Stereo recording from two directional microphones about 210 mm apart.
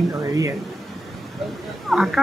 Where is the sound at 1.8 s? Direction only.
Centre (ahead or behind).